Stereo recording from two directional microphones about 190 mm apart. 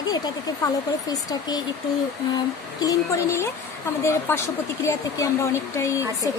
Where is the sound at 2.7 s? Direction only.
15° left (ahead or behind).